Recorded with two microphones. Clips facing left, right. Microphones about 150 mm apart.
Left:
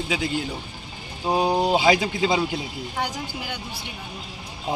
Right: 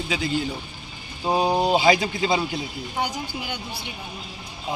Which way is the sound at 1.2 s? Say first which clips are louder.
Even; 5° left (ahead or behind).